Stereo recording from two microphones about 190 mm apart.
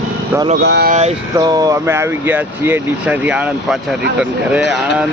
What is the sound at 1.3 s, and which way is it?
Speech, 20° right (ahead or behind).